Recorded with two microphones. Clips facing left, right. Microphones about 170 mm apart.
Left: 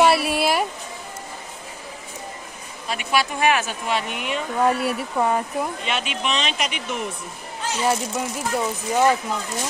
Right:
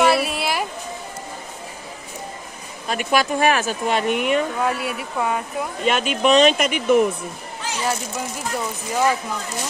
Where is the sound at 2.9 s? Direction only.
45° right (ahead or behind).